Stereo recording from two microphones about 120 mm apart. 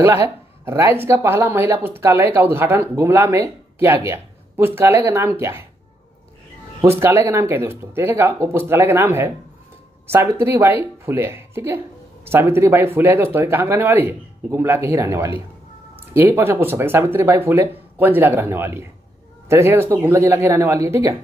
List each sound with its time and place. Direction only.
0.0 s speech: 20° right (ahead or behind)
6.9 s speech: 20° right (ahead or behind)